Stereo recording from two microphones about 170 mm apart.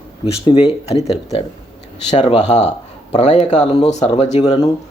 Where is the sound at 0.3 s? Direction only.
35° left (ahead or behind).